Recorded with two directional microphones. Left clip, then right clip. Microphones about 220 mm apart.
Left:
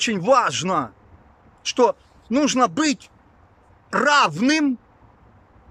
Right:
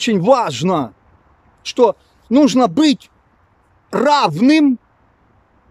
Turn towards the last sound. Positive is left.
turn(degrees=-20)  # may be behind; listen again after turning